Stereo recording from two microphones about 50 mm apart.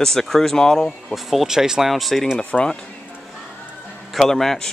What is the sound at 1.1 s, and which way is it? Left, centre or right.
Speech, centre.